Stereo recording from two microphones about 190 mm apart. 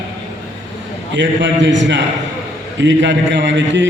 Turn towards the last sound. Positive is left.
turn(degrees=-70)  # may be behind; listen again after turning